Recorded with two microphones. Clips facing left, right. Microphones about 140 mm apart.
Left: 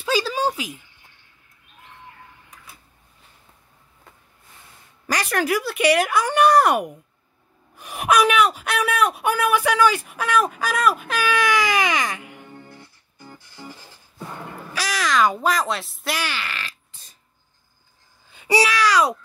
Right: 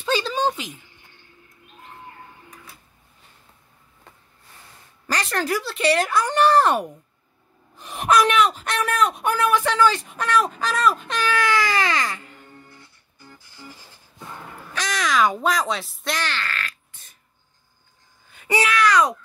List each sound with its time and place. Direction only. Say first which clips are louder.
0.0 s a sound: even; 5° left (ahead or behind)
5.0 s a woman's voice: left 2 dB; 10° left (ahead or behind)
14.7 s speech: even; 5° left (ahead or behind)
18.5 s a woman's voice: left 1 dB; 10° left (ahead or behind)